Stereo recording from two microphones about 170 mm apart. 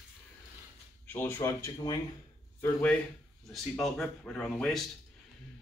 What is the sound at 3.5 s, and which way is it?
Speech, centre (ahead or behind).